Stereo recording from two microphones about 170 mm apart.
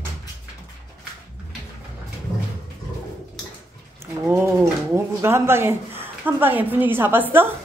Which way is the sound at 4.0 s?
15° right (ahead or behind).